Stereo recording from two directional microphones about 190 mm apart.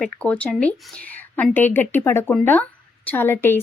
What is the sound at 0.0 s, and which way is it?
A woman's voice, 5° left (ahead or behind).